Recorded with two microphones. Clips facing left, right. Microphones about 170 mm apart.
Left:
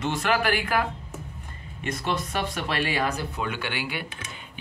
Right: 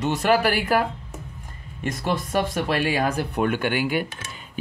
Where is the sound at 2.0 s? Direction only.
45° right (ahead or behind).